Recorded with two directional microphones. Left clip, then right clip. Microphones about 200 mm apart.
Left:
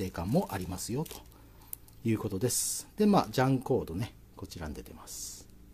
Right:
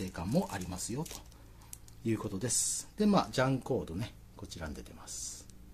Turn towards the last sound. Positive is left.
turn(degrees=35)  # may be behind; listen again after turning